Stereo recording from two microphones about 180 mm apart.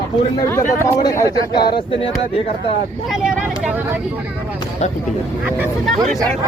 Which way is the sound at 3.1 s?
5° right (ahead or behind).